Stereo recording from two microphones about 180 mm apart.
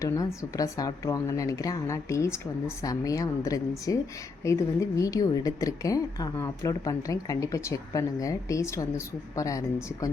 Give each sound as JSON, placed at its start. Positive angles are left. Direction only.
{"t": 0.0, "sound": "a woman's voice", "side_deg": 20}